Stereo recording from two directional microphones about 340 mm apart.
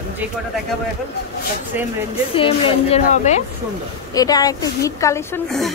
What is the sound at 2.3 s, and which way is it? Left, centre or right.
Speech, centre.